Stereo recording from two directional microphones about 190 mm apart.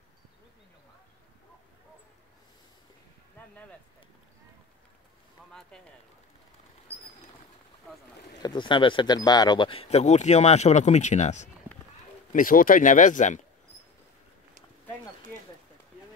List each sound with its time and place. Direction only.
3.4 s a sound: 10° left (ahead or behind)
5.5 s speech: 5° left (ahead or behind)
8.4 s speech: 25° left (ahead or behind); by 13.4 s 40° left (ahead or behind)